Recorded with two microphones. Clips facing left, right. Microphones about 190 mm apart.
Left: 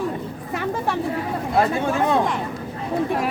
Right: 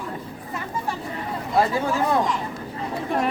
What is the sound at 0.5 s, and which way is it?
Chatter, 75° left (ahead or behind).